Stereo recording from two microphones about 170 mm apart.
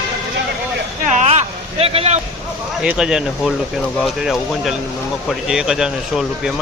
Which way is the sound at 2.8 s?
5° right (ahead or behind).